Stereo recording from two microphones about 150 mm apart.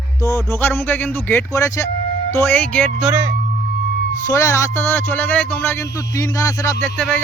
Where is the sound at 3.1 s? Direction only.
20° right (ahead or behind).